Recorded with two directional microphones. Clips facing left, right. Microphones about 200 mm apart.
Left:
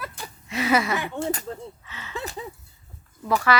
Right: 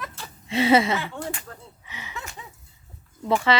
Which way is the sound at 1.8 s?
15° right (ahead or behind).